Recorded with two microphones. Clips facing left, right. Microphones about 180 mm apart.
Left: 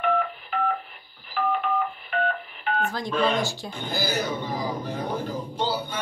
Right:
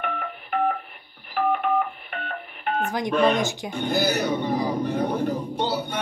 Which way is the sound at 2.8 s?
20° right (ahead or behind).